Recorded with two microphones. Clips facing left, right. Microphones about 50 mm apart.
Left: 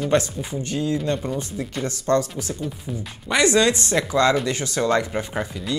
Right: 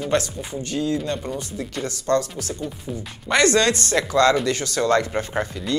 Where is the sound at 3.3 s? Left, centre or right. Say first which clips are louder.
Even; centre.